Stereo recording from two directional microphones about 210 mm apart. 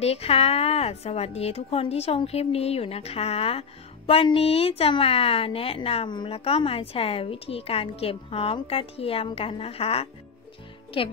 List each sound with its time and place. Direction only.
0.0 s a woman's voice: 30° left (ahead or behind)